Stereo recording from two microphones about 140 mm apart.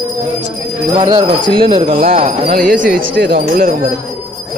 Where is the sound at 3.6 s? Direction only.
70° right (ahead or behind).